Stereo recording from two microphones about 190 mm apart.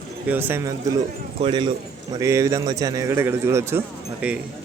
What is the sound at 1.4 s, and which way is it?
Speech, 25° right (ahead or behind).